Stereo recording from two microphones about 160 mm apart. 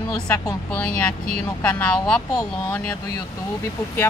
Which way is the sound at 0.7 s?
5° left (ahead or behind).